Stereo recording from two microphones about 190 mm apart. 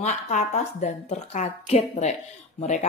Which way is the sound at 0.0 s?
40° left (ahead or behind).